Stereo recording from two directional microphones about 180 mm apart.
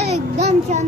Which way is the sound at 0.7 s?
40° right (ahead or behind).